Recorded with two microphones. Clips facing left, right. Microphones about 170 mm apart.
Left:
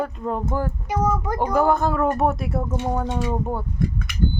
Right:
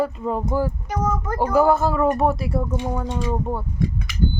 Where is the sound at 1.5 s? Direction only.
5° right (ahead or behind).